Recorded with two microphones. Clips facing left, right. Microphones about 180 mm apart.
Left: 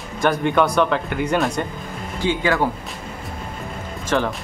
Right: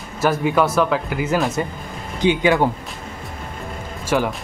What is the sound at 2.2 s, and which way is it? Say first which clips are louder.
Speech: right 4 dB; 20° right (ahead or behind).